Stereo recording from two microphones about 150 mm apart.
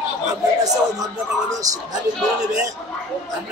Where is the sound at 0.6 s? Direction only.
25° right (ahead or behind).